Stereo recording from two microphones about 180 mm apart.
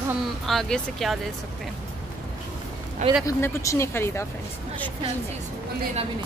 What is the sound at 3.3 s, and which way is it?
Speech, 15° left (ahead or behind).